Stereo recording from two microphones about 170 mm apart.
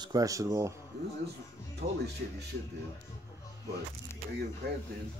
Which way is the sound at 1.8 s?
40° right (ahead or behind).